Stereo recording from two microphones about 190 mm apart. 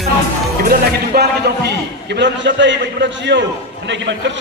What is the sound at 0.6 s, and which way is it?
A man's voice, 50° right (ahead or behind).